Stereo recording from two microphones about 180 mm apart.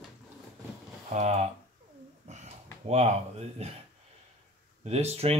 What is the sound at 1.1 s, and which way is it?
Speech, 40° right (ahead or behind).